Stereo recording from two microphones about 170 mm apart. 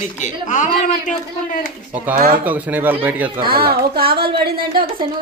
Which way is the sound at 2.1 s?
60° right (ahead or behind).